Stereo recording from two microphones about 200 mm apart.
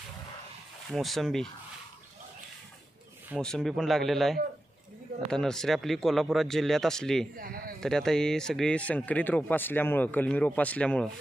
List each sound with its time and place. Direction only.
0.8 s speech: centre (ahead or behind)
3.3 s speech: 5° left (ahead or behind)
7.3 s speech: 50° right (ahead or behind)
7.8 s speech: 5° left (ahead or behind)